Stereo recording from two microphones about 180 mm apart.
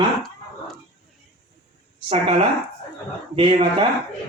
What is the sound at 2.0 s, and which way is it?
Speech, 30° right (ahead or behind).